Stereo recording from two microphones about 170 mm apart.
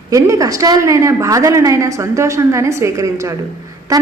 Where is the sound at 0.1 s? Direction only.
20° right (ahead or behind).